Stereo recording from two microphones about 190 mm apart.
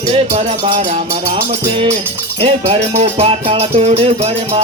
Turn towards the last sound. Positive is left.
turn(degrees=-30)  # may be behind; listen again after turning